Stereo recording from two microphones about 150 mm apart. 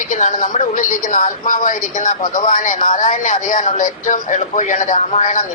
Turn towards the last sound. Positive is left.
turn(degrees=55)  # may be behind; listen again after turning